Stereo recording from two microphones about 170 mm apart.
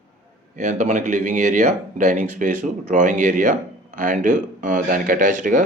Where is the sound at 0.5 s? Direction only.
45° right (ahead or behind).